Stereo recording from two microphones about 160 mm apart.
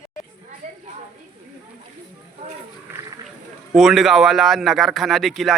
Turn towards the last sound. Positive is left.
turn(degrees=0)  # may be behind; listen again after turning